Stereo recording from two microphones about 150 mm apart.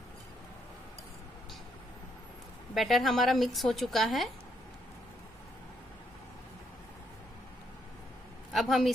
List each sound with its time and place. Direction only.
2.7 s speech: centre (ahead or behind)
8.5 s speech: centre (ahead or behind)